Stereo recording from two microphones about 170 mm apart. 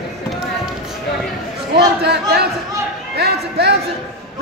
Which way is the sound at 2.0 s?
75° right (ahead or behind).